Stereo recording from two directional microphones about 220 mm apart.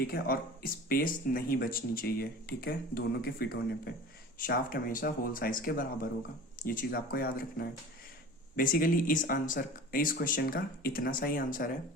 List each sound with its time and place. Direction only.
0.0 s speech: 45° left (ahead or behind)